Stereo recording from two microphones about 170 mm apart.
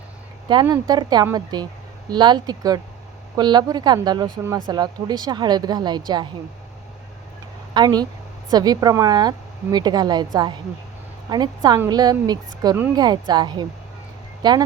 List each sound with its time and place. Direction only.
0.4 s speech: 25° right (ahead or behind)
7.7 s speech: 25° right (ahead or behind)